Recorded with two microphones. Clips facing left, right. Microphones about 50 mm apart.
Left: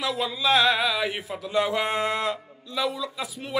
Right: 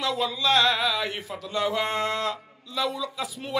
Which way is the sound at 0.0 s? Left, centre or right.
Centre.